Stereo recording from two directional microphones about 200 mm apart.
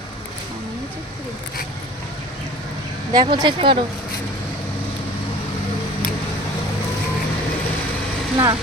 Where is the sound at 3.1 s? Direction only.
25° right (ahead or behind).